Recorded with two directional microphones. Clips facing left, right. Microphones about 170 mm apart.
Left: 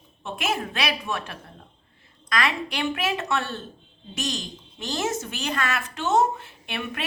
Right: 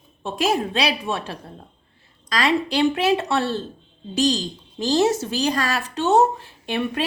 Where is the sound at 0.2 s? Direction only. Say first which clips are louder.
Right 6 dB; 30° right (ahead or behind).